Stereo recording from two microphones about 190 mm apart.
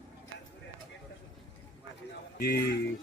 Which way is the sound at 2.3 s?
55° left (ahead or behind).